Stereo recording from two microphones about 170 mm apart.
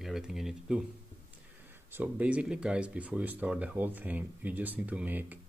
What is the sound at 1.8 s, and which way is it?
Speech, 10° right (ahead or behind).